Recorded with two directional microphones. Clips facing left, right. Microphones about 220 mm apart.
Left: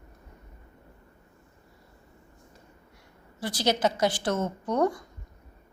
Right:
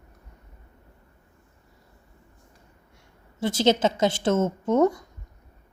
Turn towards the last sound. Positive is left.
turn(degrees=-25)  # may be behind; listen again after turning